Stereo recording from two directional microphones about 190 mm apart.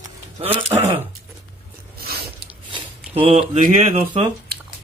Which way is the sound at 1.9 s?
55° right (ahead or behind).